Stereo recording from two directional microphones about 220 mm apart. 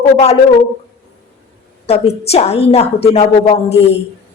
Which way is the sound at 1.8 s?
30° left (ahead or behind).